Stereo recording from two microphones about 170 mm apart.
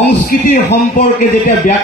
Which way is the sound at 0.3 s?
55° left (ahead or behind).